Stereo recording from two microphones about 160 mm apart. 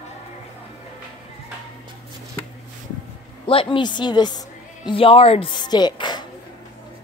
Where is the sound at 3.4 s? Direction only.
35° left (ahead or behind).